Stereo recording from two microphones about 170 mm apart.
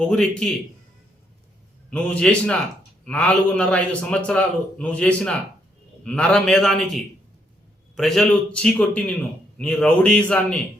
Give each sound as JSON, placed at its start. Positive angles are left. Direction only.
{"t": 0.0, "sound": "a man's voice", "side_deg": 5}
{"t": 1.9, "sound": "a man's voice", "side_deg": 10}